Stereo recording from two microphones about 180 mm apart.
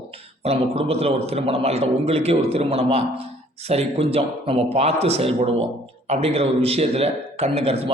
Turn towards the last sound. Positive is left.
turn(degrees=-35)  # may be behind; listen again after turning